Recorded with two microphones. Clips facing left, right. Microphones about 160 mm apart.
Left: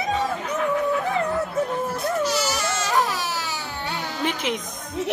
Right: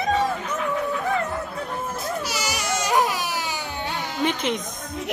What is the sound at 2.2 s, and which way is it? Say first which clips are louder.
Baby cry: left 4 dB; 10° right (ahead or behind).